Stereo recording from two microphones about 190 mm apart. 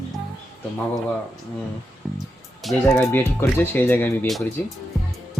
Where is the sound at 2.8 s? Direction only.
10° left (ahead or behind).